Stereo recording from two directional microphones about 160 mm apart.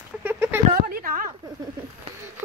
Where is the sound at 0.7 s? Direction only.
60° right (ahead or behind).